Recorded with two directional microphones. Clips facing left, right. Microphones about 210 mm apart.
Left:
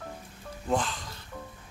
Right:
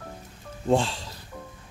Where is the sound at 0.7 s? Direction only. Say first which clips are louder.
Right 6 dB; 30° right (ahead or behind).